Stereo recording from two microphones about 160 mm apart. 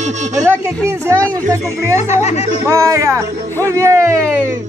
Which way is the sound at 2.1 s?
45° left (ahead or behind).